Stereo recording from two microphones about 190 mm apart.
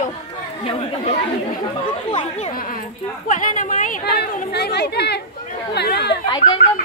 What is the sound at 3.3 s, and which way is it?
Speech, 45° left (ahead or behind).